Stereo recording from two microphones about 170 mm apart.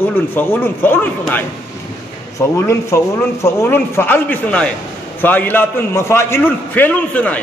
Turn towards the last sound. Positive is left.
turn(degrees=10)  # may be behind; listen again after turning